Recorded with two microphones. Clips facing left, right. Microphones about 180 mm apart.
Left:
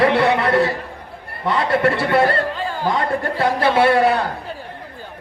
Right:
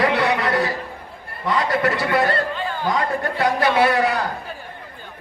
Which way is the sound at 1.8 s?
30° left (ahead or behind).